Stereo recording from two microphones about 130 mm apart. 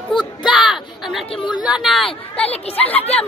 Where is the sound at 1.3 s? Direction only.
35° left (ahead or behind).